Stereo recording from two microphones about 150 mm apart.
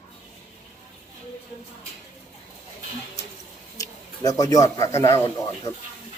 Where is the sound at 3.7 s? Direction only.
25° left (ahead or behind).